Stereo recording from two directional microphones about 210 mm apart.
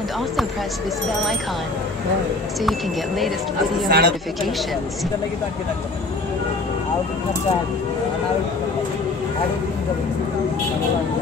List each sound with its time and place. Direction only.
3.9 s speech: 50° right (ahead or behind)